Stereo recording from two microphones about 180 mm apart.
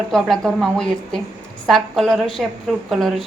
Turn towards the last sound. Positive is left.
turn(degrees=0)  # may be behind; listen again after turning